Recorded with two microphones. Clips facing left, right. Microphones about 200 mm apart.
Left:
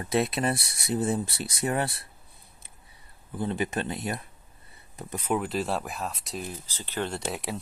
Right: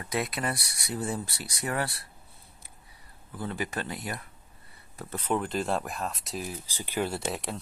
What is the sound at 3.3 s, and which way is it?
Speech, 20° left (ahead or behind).